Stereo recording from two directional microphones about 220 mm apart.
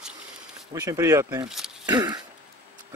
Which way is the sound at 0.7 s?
15° right (ahead or behind).